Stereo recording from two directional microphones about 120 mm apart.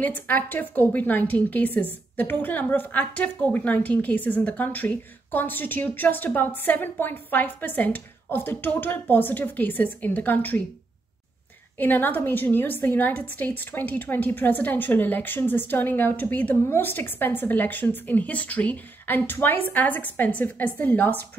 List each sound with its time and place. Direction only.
0.0 s a woman's voice: 15° left (ahead or behind)
11.8 s a woman's voice: 15° left (ahead or behind)